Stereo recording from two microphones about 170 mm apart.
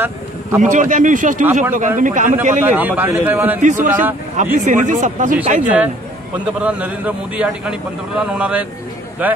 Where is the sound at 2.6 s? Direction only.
10° right (ahead or behind).